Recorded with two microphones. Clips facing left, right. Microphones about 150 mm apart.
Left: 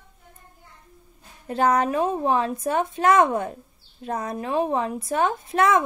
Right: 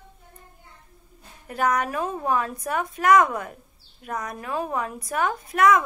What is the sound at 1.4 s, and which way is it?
A woman's voice, 30° left (ahead or behind).